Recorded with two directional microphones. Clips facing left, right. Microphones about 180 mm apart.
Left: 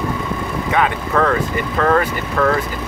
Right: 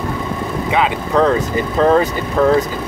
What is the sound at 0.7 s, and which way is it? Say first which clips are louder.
Speech: right 2 dB; 20° right (ahead or behind).